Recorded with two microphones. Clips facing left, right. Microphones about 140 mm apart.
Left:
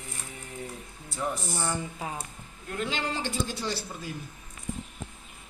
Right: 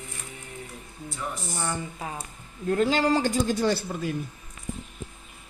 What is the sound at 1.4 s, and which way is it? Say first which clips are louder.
Speech: even; 5° left (ahead or behind).